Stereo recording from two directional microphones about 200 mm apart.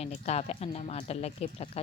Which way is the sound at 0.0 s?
35° left (ahead or behind).